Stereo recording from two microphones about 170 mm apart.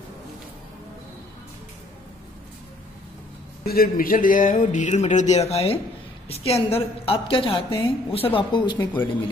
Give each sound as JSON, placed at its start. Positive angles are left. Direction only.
{"t": 3.6, "sound": "a woman's voice", "side_deg": 65}
{"t": 8.7, "sound": "speech", "side_deg": 10}